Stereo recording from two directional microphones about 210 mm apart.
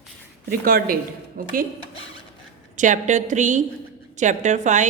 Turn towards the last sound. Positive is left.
turn(degrees=-35)  # may be behind; listen again after turning